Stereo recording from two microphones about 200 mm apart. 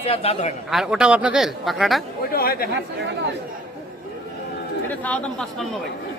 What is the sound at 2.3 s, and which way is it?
Speech, 50° left (ahead or behind).